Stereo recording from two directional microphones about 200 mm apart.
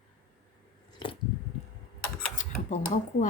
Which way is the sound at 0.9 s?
25° left (ahead or behind).